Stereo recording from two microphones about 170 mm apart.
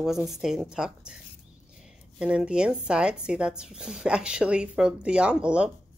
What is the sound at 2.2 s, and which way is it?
A woman's voice, 5° right (ahead or behind).